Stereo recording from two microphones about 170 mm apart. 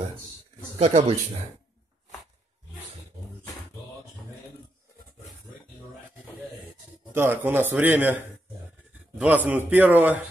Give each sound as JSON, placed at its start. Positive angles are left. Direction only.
{"t": 0.7, "sound": "speech", "side_deg": -40}
{"t": 7.1, "sound": "a man's voice", "side_deg": -15}
{"t": 9.2, "sound": "a man's voice", "side_deg": -10}